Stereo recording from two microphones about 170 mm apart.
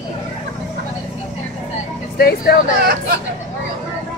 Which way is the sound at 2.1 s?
65° left (ahead or behind).